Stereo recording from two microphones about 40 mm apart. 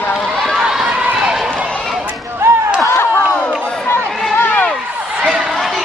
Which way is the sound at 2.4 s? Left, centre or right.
Right.